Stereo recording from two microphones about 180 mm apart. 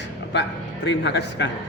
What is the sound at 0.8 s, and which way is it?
Speech, 75° left (ahead or behind).